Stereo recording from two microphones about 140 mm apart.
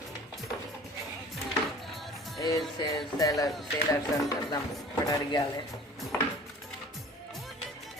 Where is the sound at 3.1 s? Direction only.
25° left (ahead or behind).